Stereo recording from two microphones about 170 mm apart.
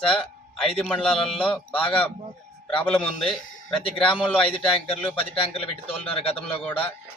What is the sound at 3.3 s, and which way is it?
Speech, 5° left (ahead or behind).